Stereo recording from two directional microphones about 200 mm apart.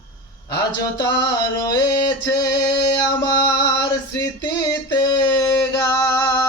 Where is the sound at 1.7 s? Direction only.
20° left (ahead or behind).